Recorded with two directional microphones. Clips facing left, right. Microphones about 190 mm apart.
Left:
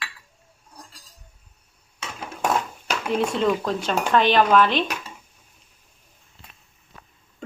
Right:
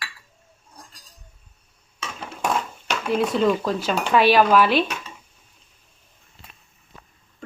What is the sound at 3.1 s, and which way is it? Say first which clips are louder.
A woman's voice: right 2 dB; centre (ahead or behind).